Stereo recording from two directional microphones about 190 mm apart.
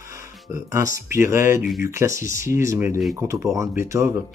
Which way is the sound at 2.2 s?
45° left (ahead or behind).